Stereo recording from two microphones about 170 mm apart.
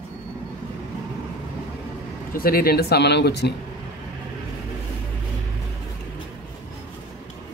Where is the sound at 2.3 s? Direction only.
60° left (ahead or behind); by 3.5 s 80° left.